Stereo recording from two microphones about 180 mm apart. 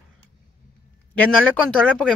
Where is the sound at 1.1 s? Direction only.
5° left (ahead or behind).